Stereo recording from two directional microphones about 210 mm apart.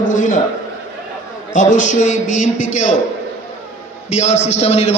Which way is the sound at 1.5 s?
35° left (ahead or behind).